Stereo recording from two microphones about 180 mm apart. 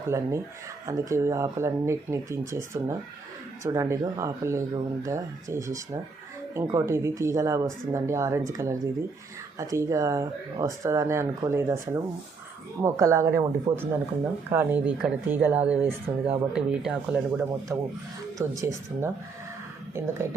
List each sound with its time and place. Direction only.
0.1 s speech: 15° right (ahead or behind)
17.7 s speech: 15° right (ahead or behind)